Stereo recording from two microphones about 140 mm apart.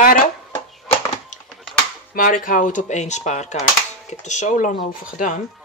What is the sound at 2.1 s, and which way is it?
Speech, 75° left (ahead or behind).